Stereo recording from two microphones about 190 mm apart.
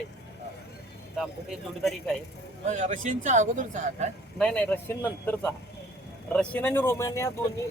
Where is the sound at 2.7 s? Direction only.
40° right (ahead or behind).